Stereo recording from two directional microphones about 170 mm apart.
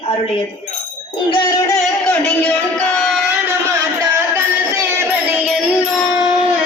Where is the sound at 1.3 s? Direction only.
20° left (ahead or behind).